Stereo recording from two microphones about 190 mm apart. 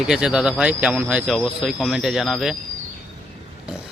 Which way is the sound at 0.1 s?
5° right (ahead or behind).